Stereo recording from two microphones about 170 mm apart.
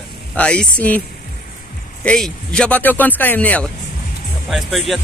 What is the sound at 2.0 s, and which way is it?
Speech, 5° left (ahead or behind).